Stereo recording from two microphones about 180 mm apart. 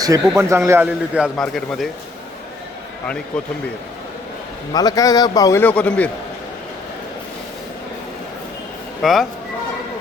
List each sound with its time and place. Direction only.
0.0 s a man's voice: 20° right (ahead or behind); by 1.9 s centre (ahead or behind)
3.3 s speech: 5° left (ahead or behind)
4.7 s a man's voice: 20° left (ahead or behind)
9.0 s speech: centre (ahead or behind)